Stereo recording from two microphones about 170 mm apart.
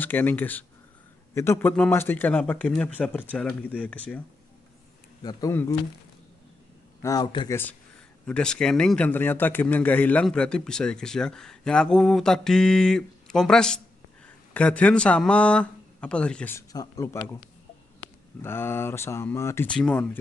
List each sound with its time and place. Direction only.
0.0 s speech: 10° left (ahead or behind)
5.2 s speech: 25° left (ahead or behind)
5.5 s speech: 15° left (ahead or behind)
7.0 s speech: 20° left (ahead or behind)
8.3 s a man's voice: 5° left (ahead or behind)
18.4 s speech: 15° left (ahead or behind)